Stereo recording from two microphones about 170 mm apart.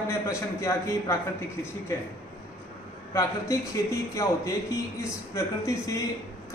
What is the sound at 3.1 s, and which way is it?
A man's voice, 15° left (ahead or behind).